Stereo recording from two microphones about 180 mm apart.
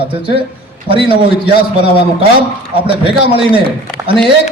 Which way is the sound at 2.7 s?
30° right (ahead or behind).